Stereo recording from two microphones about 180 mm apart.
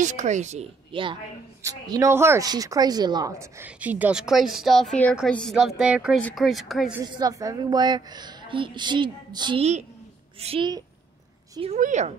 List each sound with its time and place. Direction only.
0.0 s a woman's voice: 40° right (ahead or behind)
1.6 s a woman's voice: 20° right (ahead or behind); by 7.0 s centre (ahead or behind)
7.1 s a woman's voice: 20° right (ahead or behind)
11.6 s a woman's voice: 40° right (ahead or behind)